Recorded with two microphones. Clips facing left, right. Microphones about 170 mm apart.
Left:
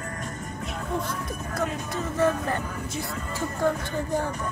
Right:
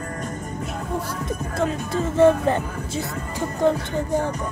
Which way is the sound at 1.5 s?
30° right (ahead or behind).